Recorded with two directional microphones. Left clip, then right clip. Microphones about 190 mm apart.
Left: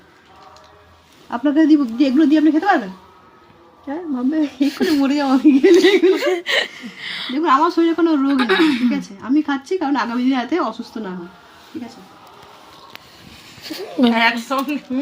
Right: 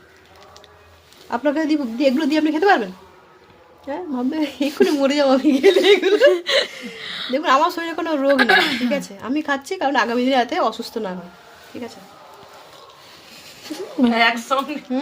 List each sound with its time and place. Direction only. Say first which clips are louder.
1.3 s speech: left 5 dB; 45° right (ahead or behind)
3.8 s speech: left 2 dB; 50° right (ahead or behind)
6.2 s a woman's voice: right 3 dB; 25° right (ahead or behind)
7.4 s speech: left 3 dB; 50° right (ahead or behind)
13.7 s a woman's voice: left 2 dB; 15° right (ahead or behind)